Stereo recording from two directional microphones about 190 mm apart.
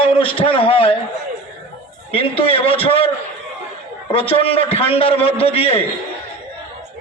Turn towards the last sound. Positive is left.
turn(degrees=30)  # may be behind; listen again after turning